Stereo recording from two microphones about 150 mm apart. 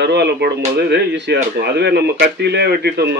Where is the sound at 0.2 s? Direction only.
90° right.